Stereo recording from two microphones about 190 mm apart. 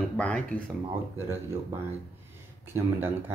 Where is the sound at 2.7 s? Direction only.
10° right (ahead or behind).